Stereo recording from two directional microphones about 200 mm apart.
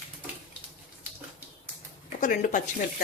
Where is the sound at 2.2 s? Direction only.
40° left (ahead or behind).